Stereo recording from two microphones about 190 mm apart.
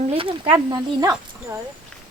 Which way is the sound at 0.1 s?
30° right (ahead or behind).